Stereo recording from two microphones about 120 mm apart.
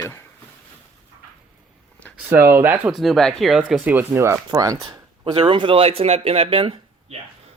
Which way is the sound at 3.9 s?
20° right (ahead or behind).